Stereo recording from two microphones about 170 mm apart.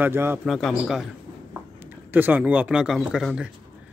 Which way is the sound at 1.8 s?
10° right (ahead or behind).